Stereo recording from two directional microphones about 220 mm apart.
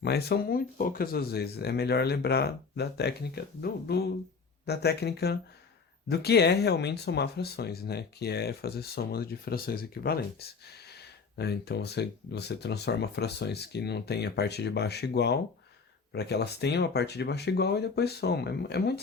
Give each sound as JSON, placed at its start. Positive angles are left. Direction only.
{"t": 0.0, "sound": "speech", "side_deg": 45}